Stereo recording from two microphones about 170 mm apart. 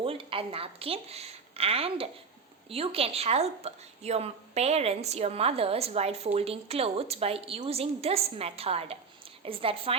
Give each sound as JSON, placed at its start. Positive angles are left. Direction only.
{"t": 0.0, "sound": "a woman's voice", "side_deg": -30}